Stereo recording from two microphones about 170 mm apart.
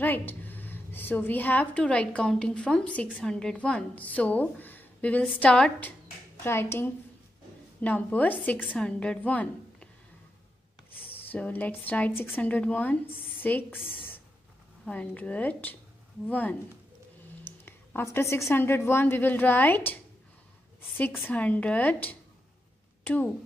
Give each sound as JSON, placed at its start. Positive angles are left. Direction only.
{"t": 0.0, "sound": "a woman's voice", "side_deg": 10}
{"t": 8.5, "sound": "a woman's voice", "side_deg": -5}
{"t": 8.8, "sound": "a woman's voice", "side_deg": 5}
{"t": 10.9, "sound": "a sound", "side_deg": 35}
{"t": 11.3, "sound": "a woman's voice", "side_deg": 10}
{"t": 14.9, "sound": "a woman's voice", "side_deg": 5}
{"t": 17.5, "sound": "a sound", "side_deg": 10}
{"t": 18.5, "sound": "a woman's voice", "side_deg": 15}
{"t": 21.3, "sound": "a woman's voice", "side_deg": 10}